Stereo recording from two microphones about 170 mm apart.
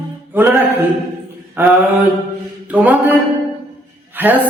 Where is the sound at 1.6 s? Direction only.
10° right (ahead or behind).